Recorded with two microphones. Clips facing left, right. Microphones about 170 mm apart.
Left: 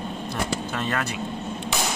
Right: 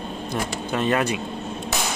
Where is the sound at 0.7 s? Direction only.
20° right (ahead or behind).